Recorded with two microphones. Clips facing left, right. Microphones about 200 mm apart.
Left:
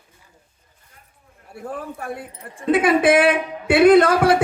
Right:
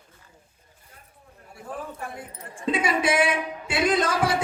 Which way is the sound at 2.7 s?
55° left (ahead or behind).